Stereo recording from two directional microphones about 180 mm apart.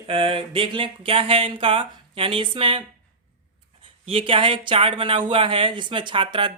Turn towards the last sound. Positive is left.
turn(degrees=-25)  # may be behind; listen again after turning